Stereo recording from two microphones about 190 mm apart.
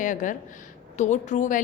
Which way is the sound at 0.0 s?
40° left (ahead or behind).